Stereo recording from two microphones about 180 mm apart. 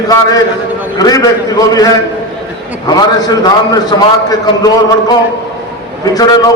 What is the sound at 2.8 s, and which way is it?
Speech, 20° left (ahead or behind).